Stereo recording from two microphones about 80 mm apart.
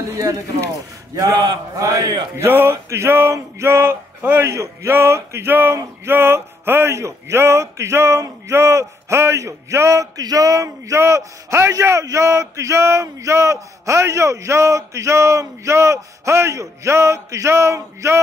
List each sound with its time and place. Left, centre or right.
0.1 s speech: right
1.1 s a man's voice: right
2.3 s male singing: right
4.2 s a man's voice: right
4.5 s male singing: right